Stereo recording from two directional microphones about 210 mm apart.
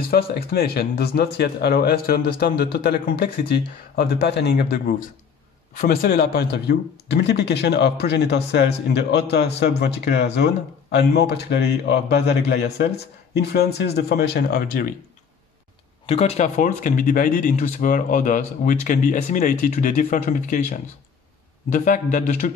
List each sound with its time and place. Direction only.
0.1 s a man's voice: 45° left (ahead or behind)
16.1 s speech: 30° left (ahead or behind)